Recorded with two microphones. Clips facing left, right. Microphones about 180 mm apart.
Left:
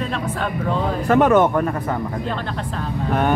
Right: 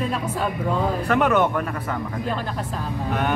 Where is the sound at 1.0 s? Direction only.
45° left (ahead or behind).